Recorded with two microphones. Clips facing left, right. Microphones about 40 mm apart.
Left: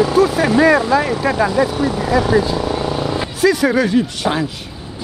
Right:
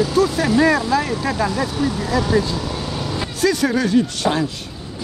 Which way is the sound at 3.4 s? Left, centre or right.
Centre.